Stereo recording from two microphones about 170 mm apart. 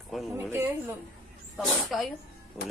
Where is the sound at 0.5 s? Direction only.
15° right (ahead or behind).